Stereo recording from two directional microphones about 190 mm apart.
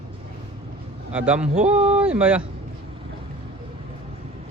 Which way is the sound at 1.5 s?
35° right (ahead or behind).